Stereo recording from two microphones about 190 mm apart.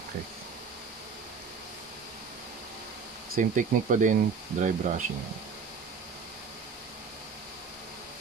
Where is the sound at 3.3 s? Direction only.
45° right (ahead or behind).